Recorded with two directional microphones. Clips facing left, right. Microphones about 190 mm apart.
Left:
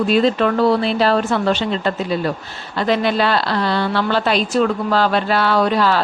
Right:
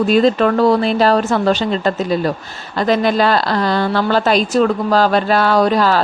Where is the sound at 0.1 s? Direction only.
45° right (ahead or behind).